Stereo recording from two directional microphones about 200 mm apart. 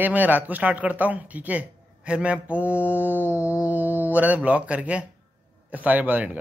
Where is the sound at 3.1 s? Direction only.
10° left (ahead or behind).